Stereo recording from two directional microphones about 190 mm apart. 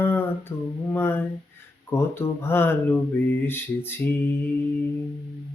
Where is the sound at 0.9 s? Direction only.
10° left (ahead or behind).